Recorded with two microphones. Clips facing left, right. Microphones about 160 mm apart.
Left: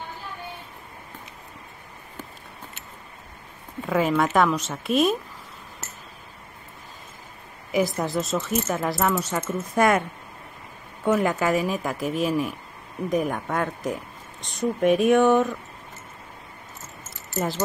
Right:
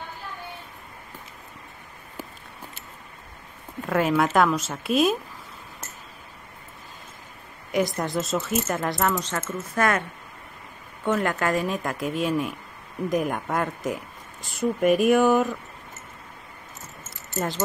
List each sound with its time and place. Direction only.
3.8 s speech: centre (ahead or behind)
7.7 s speech: 5° left (ahead or behind)
11.1 s speech: 10° left (ahead or behind)